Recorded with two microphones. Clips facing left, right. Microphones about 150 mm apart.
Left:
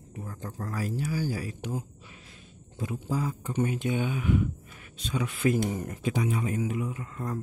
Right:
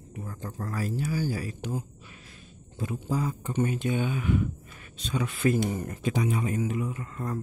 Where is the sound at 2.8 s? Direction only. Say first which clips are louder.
Right 1 dB; 10° left (ahead or behind).